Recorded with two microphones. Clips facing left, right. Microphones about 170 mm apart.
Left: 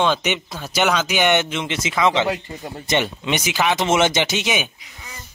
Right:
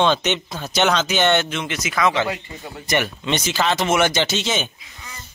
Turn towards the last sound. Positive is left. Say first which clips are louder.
# even
turn(degrees=15)  # may be behind; listen again after turning